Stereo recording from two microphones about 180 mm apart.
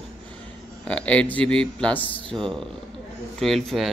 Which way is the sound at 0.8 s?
5° left (ahead or behind).